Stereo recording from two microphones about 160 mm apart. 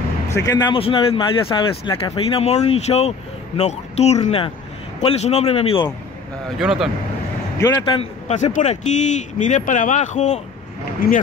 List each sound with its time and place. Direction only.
0.5 s speech: 30° left (ahead or behind)
6.6 s speech: 5° right (ahead or behind)
7.5 s speech: 15° left (ahead or behind)
8.0 s speech: 45° left (ahead or behind)
11.0 s speech: 65° left (ahead or behind)